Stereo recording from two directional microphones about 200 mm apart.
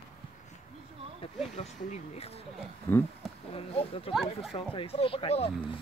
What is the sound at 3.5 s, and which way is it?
Speech, 30° left (ahead or behind).